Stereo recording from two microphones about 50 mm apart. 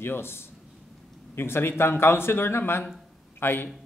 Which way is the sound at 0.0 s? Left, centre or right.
Left.